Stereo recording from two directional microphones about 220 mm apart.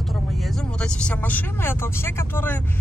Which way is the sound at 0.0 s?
Centre (ahead or behind).